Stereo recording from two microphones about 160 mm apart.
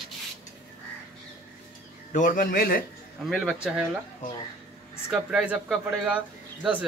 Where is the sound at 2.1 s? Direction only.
55° left (ahead or behind).